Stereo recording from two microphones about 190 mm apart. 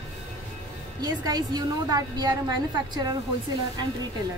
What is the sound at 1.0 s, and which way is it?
A woman's voice, 20° right (ahead or behind).